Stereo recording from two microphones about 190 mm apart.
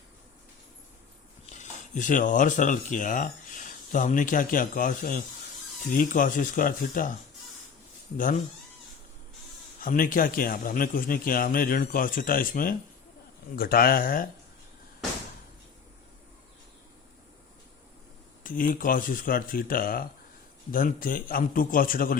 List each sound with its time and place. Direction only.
1.5 s a man's voice: 40° left (ahead or behind)
9.8 s a man's voice: 45° left (ahead or behind)
18.4 s a man's voice: 45° left (ahead or behind)